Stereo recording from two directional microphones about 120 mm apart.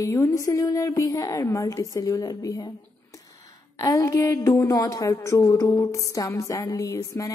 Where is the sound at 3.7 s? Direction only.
25° left (ahead or behind).